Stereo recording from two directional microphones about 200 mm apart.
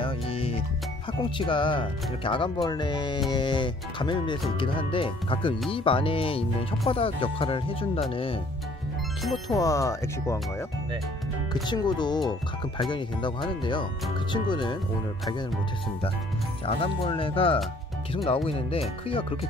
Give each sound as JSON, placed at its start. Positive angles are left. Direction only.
{"t": 0.0, "sound": "music", "side_deg": 25}
{"t": 1.4, "sound": "speech", "side_deg": 25}
{"t": 9.5, "sound": "speech", "side_deg": 15}
{"t": 11.6, "sound": "speech", "side_deg": 20}
{"t": 14.3, "sound": "speech", "side_deg": 20}
{"t": 16.6, "sound": "speech", "side_deg": 30}